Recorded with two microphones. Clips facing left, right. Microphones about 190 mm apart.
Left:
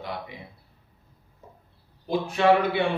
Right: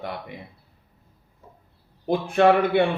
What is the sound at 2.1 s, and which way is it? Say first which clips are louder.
Speech: right 3 dB; 55° right (ahead or behind).